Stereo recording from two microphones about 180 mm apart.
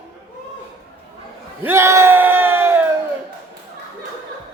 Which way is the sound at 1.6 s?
15° right (ahead or behind).